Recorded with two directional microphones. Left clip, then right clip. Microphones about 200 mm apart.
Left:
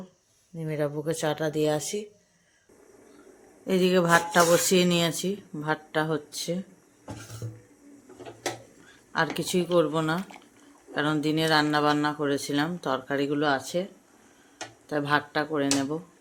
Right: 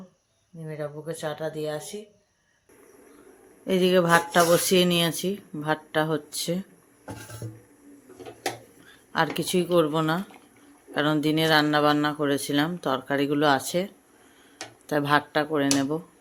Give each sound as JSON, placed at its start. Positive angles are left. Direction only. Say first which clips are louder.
{"t": 0.6, "sound": "speech", "louder": "left 5 dB", "side_deg": 45}
{"t": 3.7, "sound": "speech", "louder": "right 2 dB", "side_deg": -5}
{"t": 9.1, "sound": "speech", "louder": "right 2 dB", "side_deg": -10}
{"t": 14.8, "sound": "speech", "louder": "right 3 dB", "side_deg": -20}